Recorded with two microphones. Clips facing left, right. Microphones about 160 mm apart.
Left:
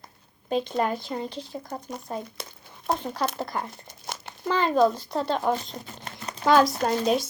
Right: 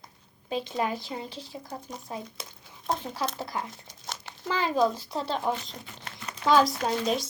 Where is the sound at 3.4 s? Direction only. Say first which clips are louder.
Left 3 dB; 55° left (ahead or behind).